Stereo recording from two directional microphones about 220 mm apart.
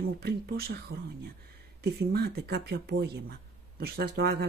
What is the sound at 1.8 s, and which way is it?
Speech, 45° right (ahead or behind).